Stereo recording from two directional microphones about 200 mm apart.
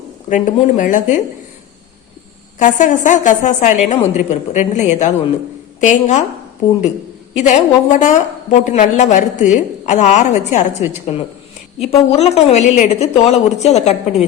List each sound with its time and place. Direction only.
0.3 s a woman's voice: 40° left (ahead or behind)
2.6 s a woman's voice: 40° left (ahead or behind)
7.3 s a woman's voice: 35° left (ahead or behind)